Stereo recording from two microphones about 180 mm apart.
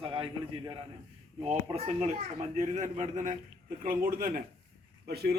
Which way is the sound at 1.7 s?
35° right (ahead or behind).